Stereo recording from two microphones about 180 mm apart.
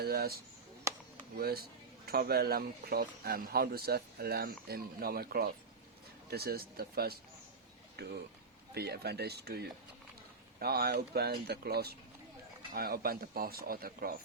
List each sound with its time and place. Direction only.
0.0 s speech: 60° right (ahead or behind)